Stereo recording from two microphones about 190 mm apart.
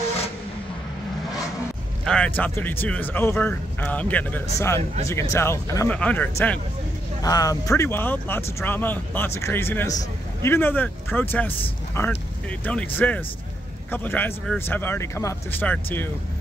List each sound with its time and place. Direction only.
2.0 s speech: 5° left (ahead or behind)
7.2 s speech: 20° left (ahead or behind)